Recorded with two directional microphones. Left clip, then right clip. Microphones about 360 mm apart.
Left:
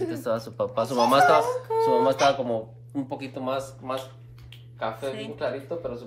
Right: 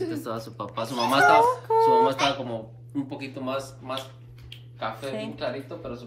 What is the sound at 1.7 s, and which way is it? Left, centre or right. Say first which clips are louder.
Speech: right 2 dB; centre.